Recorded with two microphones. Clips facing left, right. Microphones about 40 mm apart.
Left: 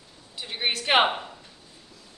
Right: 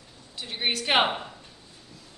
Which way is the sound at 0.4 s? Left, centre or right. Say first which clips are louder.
Even; centre.